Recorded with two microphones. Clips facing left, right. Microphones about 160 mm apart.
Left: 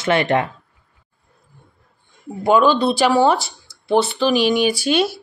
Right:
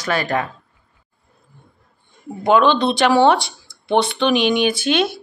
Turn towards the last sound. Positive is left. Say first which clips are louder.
# even
turn(degrees=5)  # may be behind; listen again after turning